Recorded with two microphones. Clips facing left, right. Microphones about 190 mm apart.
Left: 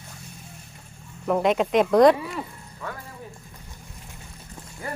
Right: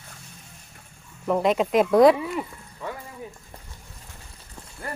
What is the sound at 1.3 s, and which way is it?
Speech, centre (ahead or behind).